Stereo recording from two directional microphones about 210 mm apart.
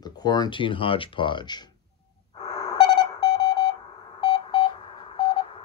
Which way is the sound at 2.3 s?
20° left (ahead or behind).